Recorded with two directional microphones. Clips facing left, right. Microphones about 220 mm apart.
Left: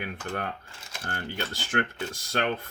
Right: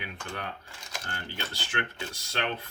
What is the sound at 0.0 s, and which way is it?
Speech, 50° left (ahead or behind).